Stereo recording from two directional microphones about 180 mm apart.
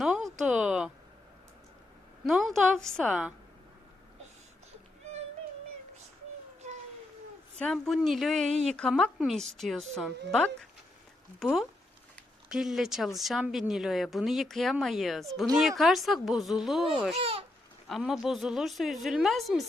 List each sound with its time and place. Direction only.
0.0 s speech: centre (ahead or behind)
2.2 s speech: centre (ahead or behind)
7.6 s speech: centre (ahead or behind)
17.2 s speech: 35° right (ahead or behind)
17.8 s speech: centre (ahead or behind)